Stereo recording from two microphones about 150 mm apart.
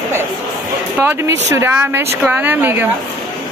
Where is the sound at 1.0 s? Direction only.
15° right (ahead or behind).